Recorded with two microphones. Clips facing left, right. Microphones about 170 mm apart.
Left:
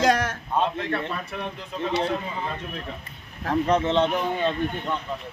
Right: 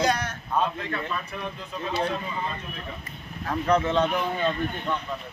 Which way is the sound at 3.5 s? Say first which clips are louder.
Left 2 dB; 20° left (ahead or behind).